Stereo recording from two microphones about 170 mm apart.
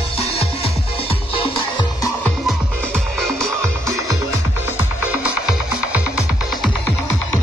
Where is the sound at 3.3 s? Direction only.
15° right (ahead or behind).